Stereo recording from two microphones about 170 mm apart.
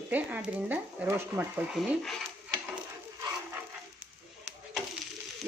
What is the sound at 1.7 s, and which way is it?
Speech, centre (ahead or behind).